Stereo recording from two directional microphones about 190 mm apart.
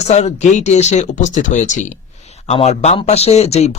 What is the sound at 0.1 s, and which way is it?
Speech, 35° left (ahead or behind).